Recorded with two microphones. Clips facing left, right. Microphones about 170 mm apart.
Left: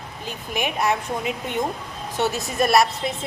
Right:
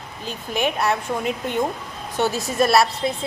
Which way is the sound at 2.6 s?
20° left (ahead or behind).